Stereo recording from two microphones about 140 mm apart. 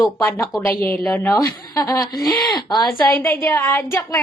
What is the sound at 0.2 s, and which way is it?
Speech, 15° left (ahead or behind).